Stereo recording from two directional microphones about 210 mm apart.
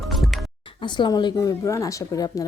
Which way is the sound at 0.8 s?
20° left (ahead or behind).